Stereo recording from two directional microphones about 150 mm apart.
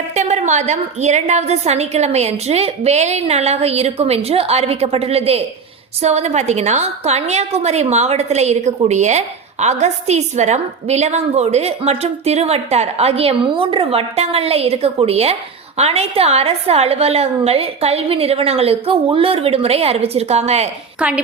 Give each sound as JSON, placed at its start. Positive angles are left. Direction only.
{"t": 0.1, "sound": "a woman's voice", "side_deg": -50}
{"t": 21.0, "sound": "a woman's voice", "side_deg": -5}